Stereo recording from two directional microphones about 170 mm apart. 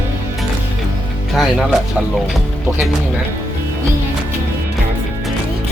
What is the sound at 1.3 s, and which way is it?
Music, centre (ahead or behind).